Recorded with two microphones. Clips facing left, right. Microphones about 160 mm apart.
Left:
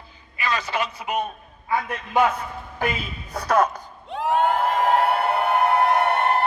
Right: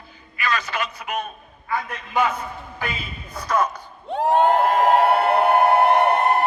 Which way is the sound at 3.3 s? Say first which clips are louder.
Left 2 dB; 65° left (ahead or behind).